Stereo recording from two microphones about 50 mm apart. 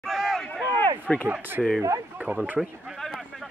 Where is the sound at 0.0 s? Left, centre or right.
Centre.